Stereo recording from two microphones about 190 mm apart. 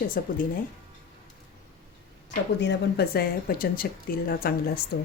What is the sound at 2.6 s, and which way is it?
Speech, 60° left (ahead or behind).